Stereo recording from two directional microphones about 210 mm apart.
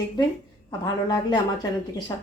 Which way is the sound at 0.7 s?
20° left (ahead or behind).